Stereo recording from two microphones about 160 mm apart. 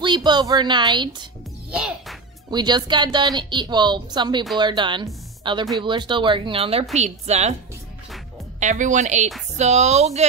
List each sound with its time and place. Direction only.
0.0 s speech: 30° right (ahead or behind)
1.7 s music: 5° right (ahead or behind)
2.5 s speech: 25° right (ahead or behind); by 7.5 s 45° right (ahead or behind)
8.5 s a woman's voice: 50° right (ahead or behind)